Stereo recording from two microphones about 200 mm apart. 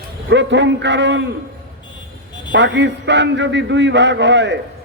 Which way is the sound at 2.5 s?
60° right (ahead or behind).